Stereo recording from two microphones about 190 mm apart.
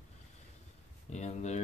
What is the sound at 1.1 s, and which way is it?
Speech, 35° left (ahead or behind).